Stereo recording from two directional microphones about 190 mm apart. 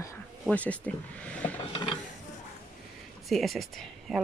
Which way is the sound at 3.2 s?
Centre (ahead or behind).